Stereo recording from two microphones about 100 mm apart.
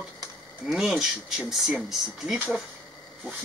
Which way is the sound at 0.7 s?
5° right (ahead or behind).